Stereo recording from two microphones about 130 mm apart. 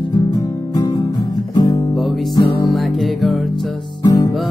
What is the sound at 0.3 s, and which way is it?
Music, 30° left (ahead or behind).